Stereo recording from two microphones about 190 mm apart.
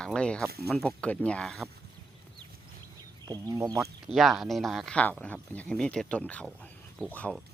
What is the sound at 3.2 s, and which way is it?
Speech, 20° right (ahead or behind).